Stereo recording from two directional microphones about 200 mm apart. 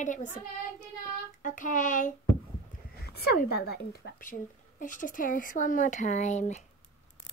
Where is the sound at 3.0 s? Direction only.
50° left (ahead or behind); by 6.6 s 35° left (ahead or behind).